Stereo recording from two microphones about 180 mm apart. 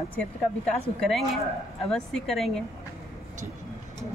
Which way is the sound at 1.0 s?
Centre (ahead or behind).